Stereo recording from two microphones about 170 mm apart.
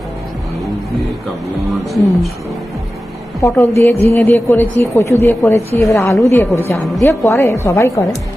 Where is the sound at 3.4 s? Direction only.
15° left (ahead or behind).